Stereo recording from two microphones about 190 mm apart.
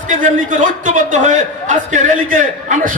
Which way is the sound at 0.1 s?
40° right (ahead or behind).